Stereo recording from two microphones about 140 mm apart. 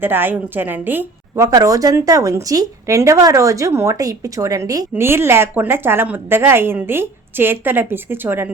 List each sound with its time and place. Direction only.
0.0 s speech: 15° right (ahead or behind)
1.5 s speech: 25° right (ahead or behind)